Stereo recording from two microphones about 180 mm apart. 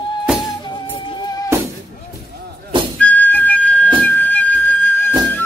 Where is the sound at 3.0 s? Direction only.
10° left (ahead or behind).